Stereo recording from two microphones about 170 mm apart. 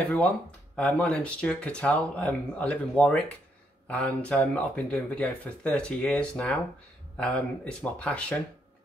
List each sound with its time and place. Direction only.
0.7 s speech: 5° left (ahead or behind)